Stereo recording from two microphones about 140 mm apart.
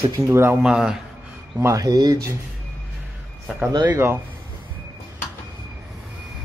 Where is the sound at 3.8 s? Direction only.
15° right (ahead or behind).